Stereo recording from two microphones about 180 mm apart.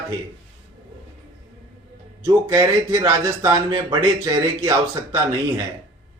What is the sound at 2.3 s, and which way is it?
A man's voice, 15° right (ahead or behind).